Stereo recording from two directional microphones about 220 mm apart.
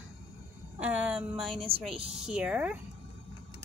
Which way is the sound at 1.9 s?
25° right (ahead or behind).